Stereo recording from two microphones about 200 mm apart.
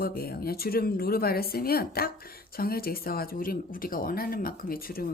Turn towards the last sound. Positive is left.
turn(degrees=45)  # may be behind; listen again after turning